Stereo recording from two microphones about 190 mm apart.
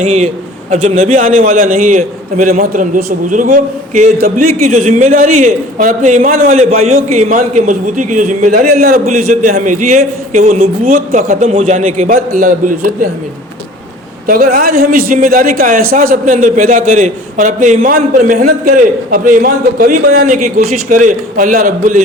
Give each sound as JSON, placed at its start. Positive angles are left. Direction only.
{"t": 0.0, "sound": "a man's voice", "side_deg": -35}
{"t": 9.0, "sound": "speech", "side_deg": -35}
{"t": 14.3, "sound": "speech", "side_deg": -50}